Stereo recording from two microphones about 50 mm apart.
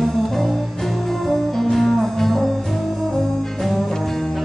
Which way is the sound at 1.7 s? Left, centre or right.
Centre.